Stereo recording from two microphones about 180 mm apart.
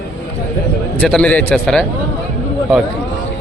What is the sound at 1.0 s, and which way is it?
Speech, 5° left (ahead or behind).